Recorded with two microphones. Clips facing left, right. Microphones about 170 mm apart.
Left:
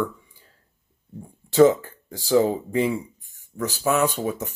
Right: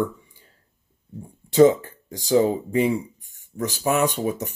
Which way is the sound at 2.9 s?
40° right (ahead or behind).